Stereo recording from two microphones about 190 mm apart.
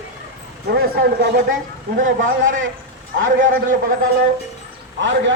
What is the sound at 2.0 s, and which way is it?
A man's voice, 90° right.